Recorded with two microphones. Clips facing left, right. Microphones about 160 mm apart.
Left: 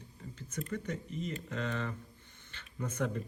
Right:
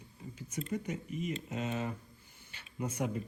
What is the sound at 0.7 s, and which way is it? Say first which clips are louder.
Speech: right 1 dB; 10° right (ahead or behind).